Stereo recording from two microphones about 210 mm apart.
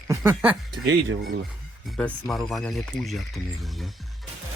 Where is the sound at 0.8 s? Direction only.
60° right (ahead or behind).